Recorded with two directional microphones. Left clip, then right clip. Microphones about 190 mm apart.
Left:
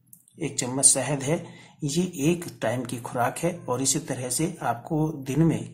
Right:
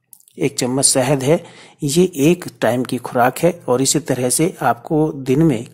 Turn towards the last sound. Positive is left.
turn(degrees=-40)  # may be behind; listen again after turning